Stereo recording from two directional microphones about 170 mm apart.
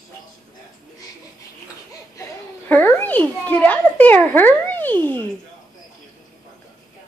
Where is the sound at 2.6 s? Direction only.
10° left (ahead or behind).